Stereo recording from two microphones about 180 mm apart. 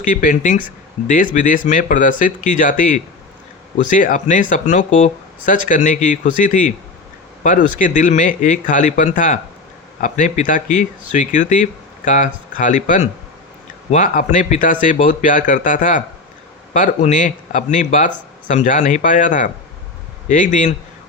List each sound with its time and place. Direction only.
0.1 s speech: 50° left (ahead or behind)
7.8 s speech: 45° left (ahead or behind)